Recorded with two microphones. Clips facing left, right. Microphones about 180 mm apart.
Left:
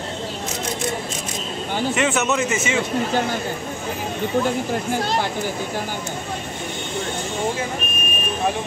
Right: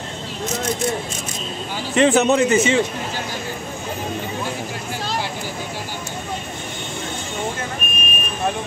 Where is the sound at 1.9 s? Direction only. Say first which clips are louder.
Right 8 dB; 35° right (ahead or behind).